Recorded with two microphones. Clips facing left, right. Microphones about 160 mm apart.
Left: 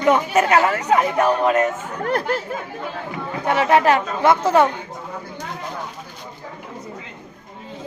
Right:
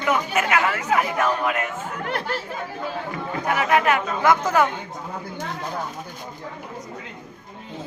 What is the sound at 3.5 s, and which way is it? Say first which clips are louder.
A woman's voice: left 4 dB; 30° left (ahead or behind).